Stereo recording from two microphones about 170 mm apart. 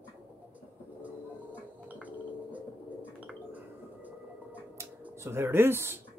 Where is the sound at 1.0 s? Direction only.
10° right (ahead or behind).